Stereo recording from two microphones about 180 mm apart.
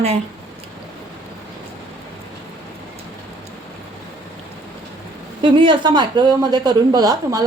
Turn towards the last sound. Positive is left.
turn(degrees=-20)  # may be behind; listen again after turning